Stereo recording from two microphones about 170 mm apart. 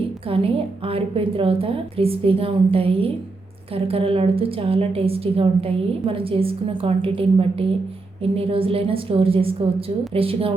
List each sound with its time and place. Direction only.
0.3 s a woman's voice: 35° right (ahead or behind)